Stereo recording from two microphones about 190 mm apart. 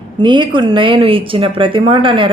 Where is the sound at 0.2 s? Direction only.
25° right (ahead or behind).